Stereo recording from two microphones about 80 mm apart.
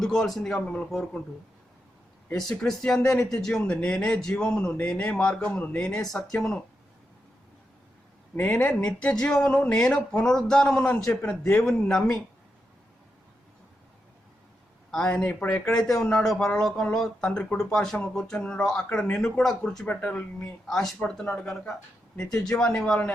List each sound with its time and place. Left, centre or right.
0.0 s speech: centre
2.3 s speech: centre
8.4 s speech: centre
14.8 s speech: centre
15.6 s speech: centre
19.8 s speech: centre
20.7 s speech: centre